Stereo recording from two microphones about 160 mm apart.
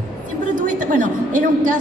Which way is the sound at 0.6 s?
55° right (ahead or behind).